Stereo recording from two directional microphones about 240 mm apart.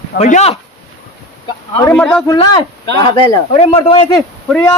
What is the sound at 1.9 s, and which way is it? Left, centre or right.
Speech, centre.